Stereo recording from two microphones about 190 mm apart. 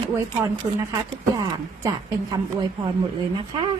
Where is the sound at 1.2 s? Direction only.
15° right (ahead or behind).